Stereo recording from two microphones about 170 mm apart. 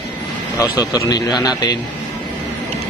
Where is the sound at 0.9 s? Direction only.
25° left (ahead or behind).